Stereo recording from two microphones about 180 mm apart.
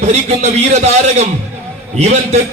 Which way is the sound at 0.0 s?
35° right (ahead or behind).